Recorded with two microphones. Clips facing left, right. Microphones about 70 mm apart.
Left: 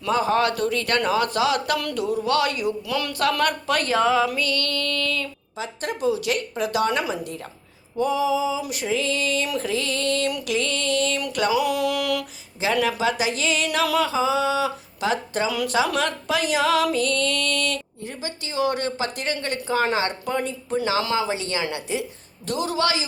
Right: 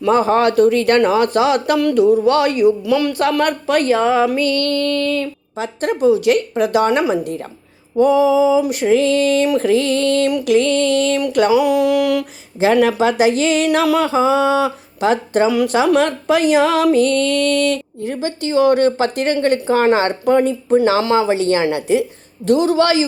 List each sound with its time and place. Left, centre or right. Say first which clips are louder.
0.0 s speech: right 7 dB; right
2.8 s speech: right 8 dB; centre
4.4 s speech: right 9 dB; right
5.5 s speech: right 9 dB; right
12.5 s speech: right 9 dB; right
18.0 s speech: right 11 dB; right